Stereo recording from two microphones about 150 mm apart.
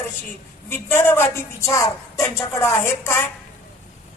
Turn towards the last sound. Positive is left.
turn(degrees=15)  # may be behind; listen again after turning